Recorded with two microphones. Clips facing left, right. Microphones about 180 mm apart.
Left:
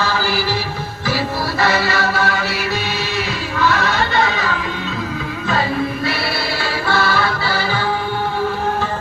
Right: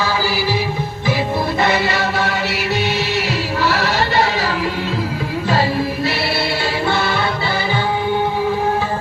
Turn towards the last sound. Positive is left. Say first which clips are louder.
# even
turn(degrees=-20)  # may be behind; listen again after turning